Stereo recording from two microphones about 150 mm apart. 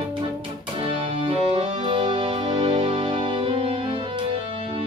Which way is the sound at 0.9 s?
35° right (ahead or behind).